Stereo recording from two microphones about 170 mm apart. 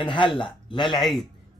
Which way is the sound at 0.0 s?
30° left (ahead or behind).